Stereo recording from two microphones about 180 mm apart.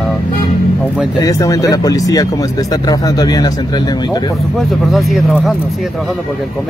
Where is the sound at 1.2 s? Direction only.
20° left (ahead or behind).